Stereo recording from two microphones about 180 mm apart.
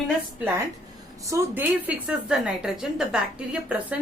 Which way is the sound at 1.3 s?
10° right (ahead or behind).